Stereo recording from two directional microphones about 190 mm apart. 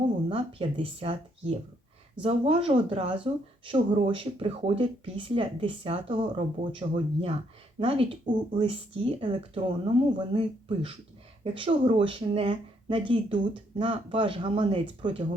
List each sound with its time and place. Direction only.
0.3 s speech: 30° right (ahead or behind)